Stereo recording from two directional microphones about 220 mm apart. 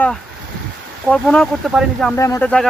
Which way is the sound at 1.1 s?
5° left (ahead or behind).